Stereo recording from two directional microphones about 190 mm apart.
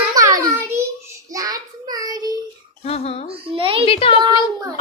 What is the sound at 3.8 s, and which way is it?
Speech, 30° left (ahead or behind).